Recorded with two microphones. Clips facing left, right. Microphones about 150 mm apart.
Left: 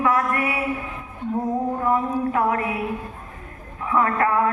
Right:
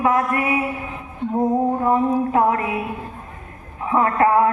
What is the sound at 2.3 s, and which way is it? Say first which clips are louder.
Mantra: right 3 dB; 25° right (ahead or behind).